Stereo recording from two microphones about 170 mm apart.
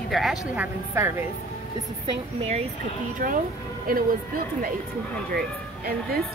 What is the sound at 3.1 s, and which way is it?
Speech, 55° right (ahead or behind).